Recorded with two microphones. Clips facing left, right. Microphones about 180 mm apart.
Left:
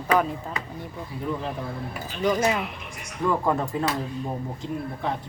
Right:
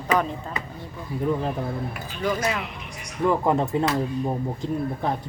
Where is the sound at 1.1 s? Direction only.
45° right (ahead or behind).